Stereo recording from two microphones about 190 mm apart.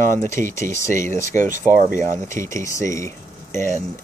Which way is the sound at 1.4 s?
40° right (ahead or behind).